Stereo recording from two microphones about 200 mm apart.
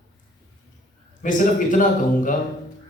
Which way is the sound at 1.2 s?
40° left (ahead or behind).